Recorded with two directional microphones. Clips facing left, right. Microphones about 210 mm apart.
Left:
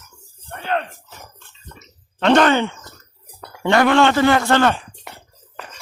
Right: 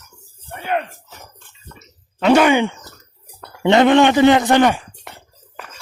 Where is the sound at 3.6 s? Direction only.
20° right (ahead or behind).